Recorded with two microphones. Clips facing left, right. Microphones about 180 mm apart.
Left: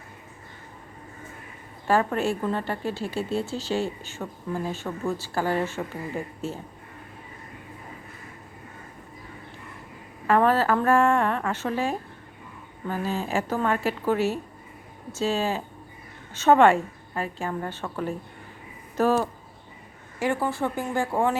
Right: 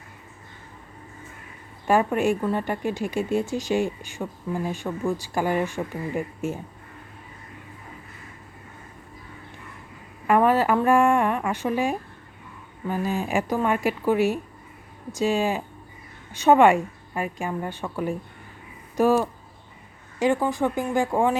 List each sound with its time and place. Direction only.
1.9 s a woman's voice: 15° right (ahead or behind)
10.2 s a woman's voice: 15° right (ahead or behind)